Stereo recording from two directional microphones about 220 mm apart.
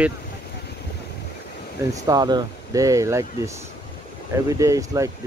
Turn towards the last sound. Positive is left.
turn(degrees=-15)  # may be behind; listen again after turning